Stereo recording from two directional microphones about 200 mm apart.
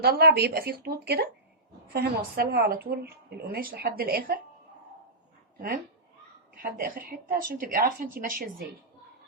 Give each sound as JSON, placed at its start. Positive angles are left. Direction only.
{"t": 0.0, "sound": "speech", "side_deg": -50}
{"t": 5.5, "sound": "speech", "side_deg": -45}